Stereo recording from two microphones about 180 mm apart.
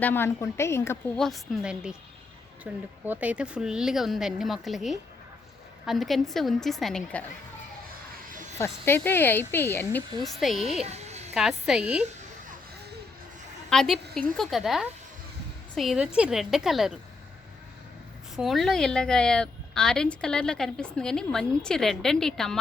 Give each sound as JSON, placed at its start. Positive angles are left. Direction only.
{"t": 0.0, "sound": "speech", "side_deg": 10}
{"t": 1.2, "sound": "a woman's voice", "side_deg": 0}
{"t": 8.5, "sound": "speech", "side_deg": 15}
{"t": 10.2, "sound": "a woman's voice", "side_deg": 0}
{"t": 10.8, "sound": "a sound", "side_deg": -40}
{"t": 11.3, "sound": "a woman's voice", "side_deg": 0}
{"t": 13.7, "sound": "a woman's voice", "side_deg": 0}
{"t": 18.3, "sound": "a woman's voice", "side_deg": 0}